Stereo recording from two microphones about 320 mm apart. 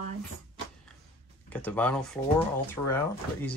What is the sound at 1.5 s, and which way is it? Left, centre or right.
Speech, centre.